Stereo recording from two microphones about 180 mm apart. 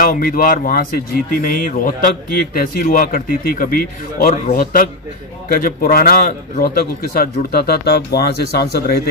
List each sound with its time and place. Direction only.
0.0 s a man's voice: 50° left (ahead or behind)